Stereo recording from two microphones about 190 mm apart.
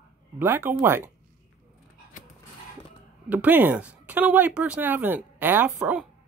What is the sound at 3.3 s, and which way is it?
Speech, 10° right (ahead or behind).